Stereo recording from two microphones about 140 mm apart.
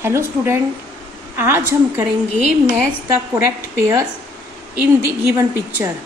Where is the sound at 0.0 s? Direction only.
20° right (ahead or behind).